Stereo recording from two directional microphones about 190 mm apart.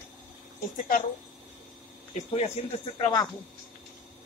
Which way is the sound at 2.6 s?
35° left (ahead or behind).